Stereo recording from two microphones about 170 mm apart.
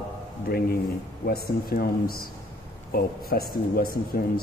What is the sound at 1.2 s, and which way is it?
A man's voice, 65° left (ahead or behind).